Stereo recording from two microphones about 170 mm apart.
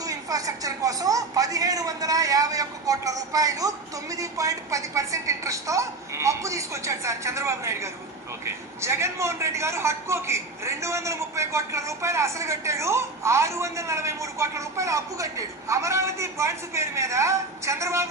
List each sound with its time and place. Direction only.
0.0 s a man's voice: 20° right (ahead or behind)